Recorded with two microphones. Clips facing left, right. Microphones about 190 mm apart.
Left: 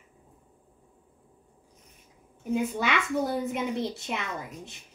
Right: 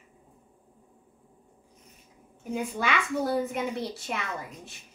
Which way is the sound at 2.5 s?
20° left (ahead or behind).